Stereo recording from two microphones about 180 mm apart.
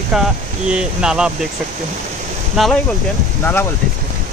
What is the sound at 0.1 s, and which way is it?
Speech, 5° right (ahead or behind).